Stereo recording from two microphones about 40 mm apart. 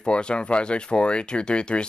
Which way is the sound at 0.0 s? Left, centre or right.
Left.